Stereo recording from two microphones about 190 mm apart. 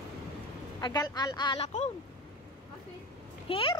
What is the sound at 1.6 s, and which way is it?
Speech, 35° left (ahead or behind).